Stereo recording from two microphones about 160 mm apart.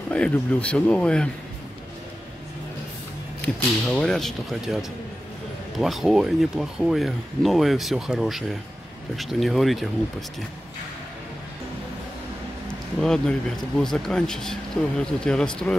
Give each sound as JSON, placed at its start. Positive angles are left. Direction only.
{"t": 0.1, "sound": "speech", "side_deg": 10}
{"t": 3.4, "sound": "speech", "side_deg": 5}
{"t": 5.8, "sound": "speech", "side_deg": 0}
{"t": 13.0, "sound": "speech", "side_deg": 5}